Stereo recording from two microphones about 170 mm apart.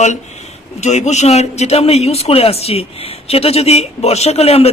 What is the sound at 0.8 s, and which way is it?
A man's voice, 40° left (ahead or behind).